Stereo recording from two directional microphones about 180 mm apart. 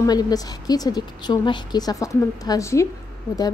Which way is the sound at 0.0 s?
20° left (ahead or behind).